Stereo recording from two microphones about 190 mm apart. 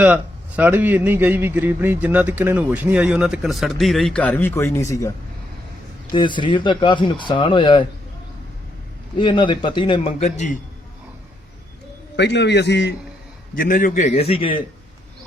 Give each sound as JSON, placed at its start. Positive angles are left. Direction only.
{"t": 0.0, "sound": "a man's voice", "side_deg": -10}
{"t": 6.1, "sound": "speech", "side_deg": 25}
{"t": 9.1, "sound": "speech", "side_deg": 25}
{"t": 12.1, "sound": "a man's voice", "side_deg": 65}
{"t": 13.6, "sound": "a man's voice", "side_deg": 45}